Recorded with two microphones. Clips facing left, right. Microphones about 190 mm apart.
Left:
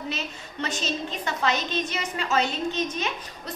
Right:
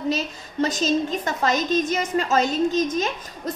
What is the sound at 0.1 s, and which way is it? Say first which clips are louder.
A woman's voice: right 8 dB; 40° right (ahead or behind).